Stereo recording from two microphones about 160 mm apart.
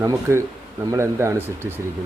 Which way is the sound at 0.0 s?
20° right (ahead or behind).